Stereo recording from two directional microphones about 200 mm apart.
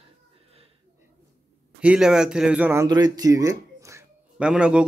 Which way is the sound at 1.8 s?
5° right (ahead or behind).